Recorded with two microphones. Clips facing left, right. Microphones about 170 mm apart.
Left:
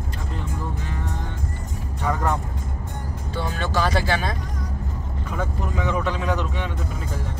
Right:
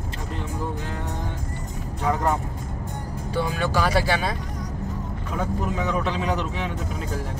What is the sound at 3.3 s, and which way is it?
Speech, 10° right (ahead or behind).